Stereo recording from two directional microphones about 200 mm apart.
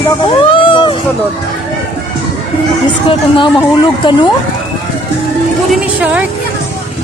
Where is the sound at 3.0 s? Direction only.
25° left (ahead or behind).